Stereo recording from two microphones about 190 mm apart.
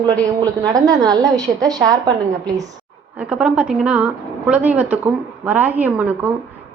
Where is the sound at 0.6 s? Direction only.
20° right (ahead or behind).